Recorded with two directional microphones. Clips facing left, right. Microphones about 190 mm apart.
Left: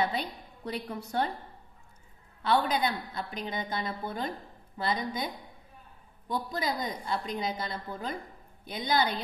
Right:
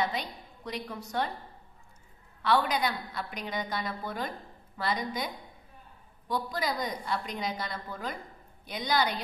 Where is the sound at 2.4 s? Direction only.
25° left (ahead or behind).